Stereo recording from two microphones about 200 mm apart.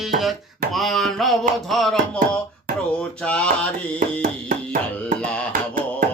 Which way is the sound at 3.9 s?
45° right (ahead or behind).